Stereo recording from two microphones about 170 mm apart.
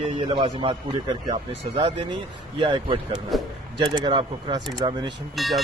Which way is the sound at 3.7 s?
25° right (ahead or behind).